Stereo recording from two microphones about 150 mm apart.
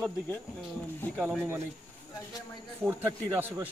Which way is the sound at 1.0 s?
15° left (ahead or behind).